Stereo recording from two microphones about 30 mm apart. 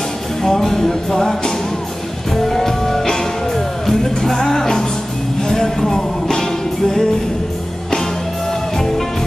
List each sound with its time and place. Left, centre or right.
0.4 s music: centre
2.4 s music: centre